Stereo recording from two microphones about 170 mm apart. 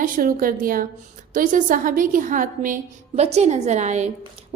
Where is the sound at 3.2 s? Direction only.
40° right (ahead or behind).